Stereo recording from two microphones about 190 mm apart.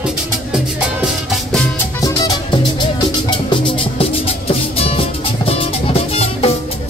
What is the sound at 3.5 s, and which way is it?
Music, 30° left (ahead or behind).